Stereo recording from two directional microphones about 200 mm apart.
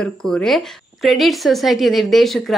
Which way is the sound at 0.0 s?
5° left (ahead or behind).